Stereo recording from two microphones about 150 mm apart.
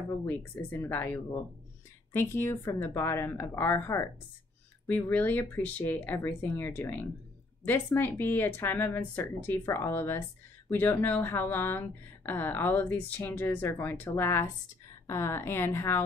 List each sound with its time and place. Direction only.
0.2 s a woman's voice: 15° left (ahead or behind)